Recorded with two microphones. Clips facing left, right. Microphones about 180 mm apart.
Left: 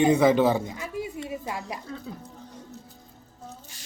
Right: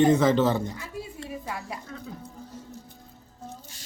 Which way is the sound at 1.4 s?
25° left (ahead or behind).